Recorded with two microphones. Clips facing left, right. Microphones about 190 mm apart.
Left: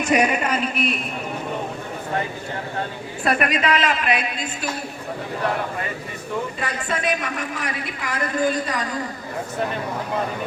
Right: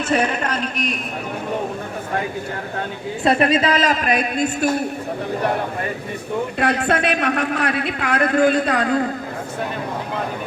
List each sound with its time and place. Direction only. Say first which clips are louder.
0.0 s a man's voice: even; 10° left (ahead or behind)
3.2 s a man's voice: right 4 dB; 30° right (ahead or behind); by 4.8 s 50° right (ahead or behind)
6.6 s a man's voice: right 7 dB; 65° right (ahead or behind)